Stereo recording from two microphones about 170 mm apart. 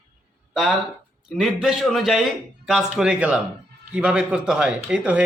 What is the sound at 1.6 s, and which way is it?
A man's voice, centre (ahead or behind).